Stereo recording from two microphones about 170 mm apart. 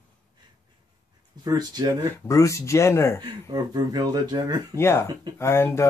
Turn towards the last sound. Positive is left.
turn(degrees=15)  # may be behind; listen again after turning